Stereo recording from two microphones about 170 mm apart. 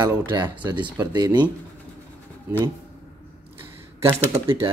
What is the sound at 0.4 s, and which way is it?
A man's voice, 25° right (ahead or behind).